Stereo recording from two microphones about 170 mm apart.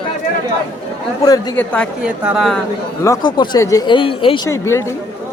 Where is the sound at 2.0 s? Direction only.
5° right (ahead or behind).